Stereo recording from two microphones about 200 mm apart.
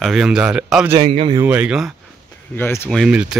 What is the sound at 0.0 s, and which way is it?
Speech, 5° right (ahead or behind).